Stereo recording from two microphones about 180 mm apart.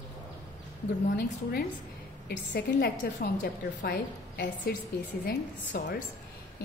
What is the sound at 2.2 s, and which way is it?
A woman's voice, 60° left (ahead or behind).